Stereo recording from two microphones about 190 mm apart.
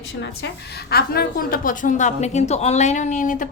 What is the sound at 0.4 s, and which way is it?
A woman's voice, 55° left (ahead or behind).